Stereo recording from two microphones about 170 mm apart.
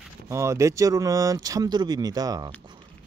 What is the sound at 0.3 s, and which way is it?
Speech, 15° right (ahead or behind).